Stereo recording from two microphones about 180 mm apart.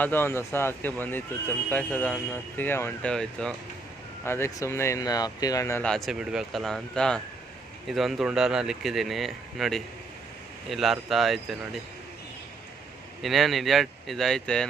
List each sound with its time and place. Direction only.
0.0 s speech: 10° left (ahead or behind)
5.9 s speech: centre (ahead or behind)
13.2 s speech: centre (ahead or behind)